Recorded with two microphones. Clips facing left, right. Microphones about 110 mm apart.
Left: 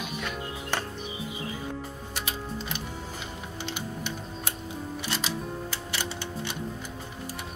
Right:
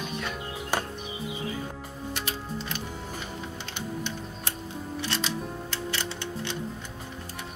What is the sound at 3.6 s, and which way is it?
Music, 5° left (ahead or behind).